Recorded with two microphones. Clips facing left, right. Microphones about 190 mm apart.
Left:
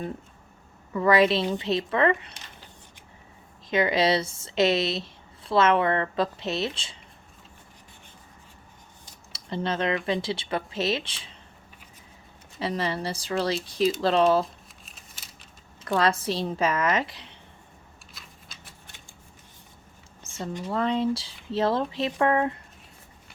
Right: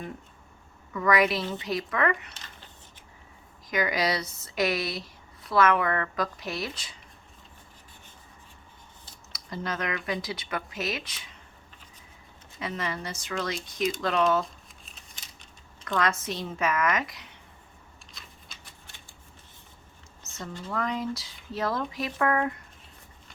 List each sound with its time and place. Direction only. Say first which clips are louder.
0.9 s a woman's voice: left 4 dB; 30° left (ahead or behind)
3.7 s a woman's voice: left 5 dB; 25° left (ahead or behind)
9.3 s a woman's voice: left 5 dB; 30° left (ahead or behind)
12.5 s speech: left 5 dB; 30° left (ahead or behind)
14.4 s crumpling: left 1 dB; centre (ahead or behind)
16.0 s a woman's voice: left 4 dB; 30° left (ahead or behind)
18.1 s typewriter: left 1 dB; centre (ahead or behind)
20.2 s a sound: left 5 dB; 30° left (ahead or behind)
20.7 s a woman's voice: left 5 dB; 30° left (ahead or behind)